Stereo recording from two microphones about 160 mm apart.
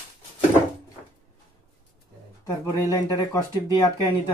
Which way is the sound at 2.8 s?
20° left (ahead or behind).